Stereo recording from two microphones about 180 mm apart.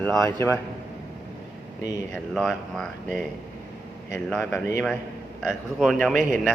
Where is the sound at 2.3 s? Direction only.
Centre (ahead or behind).